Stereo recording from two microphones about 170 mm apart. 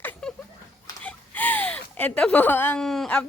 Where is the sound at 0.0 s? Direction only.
5° left (ahead or behind).